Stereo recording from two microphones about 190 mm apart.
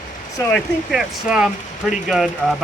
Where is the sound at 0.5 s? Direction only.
5° right (ahead or behind).